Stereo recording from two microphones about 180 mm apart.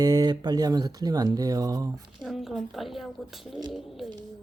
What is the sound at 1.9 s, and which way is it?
A woman's voice, centre (ahead or behind).